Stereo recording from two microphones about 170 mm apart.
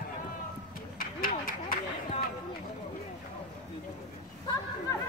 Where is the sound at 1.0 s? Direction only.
55° left (ahead or behind).